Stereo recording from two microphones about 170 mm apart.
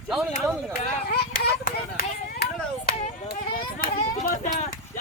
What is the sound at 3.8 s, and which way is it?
Speech, 55° left (ahead or behind).